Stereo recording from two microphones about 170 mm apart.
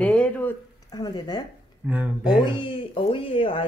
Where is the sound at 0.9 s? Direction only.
25° left (ahead or behind).